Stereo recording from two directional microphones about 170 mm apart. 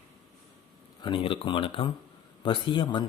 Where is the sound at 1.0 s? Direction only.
30° left (ahead or behind).